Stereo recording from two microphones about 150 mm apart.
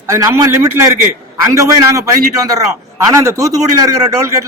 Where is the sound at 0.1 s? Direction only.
20° right (ahead or behind).